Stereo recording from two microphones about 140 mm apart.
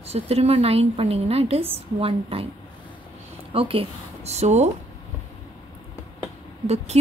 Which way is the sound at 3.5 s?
40° right (ahead or behind).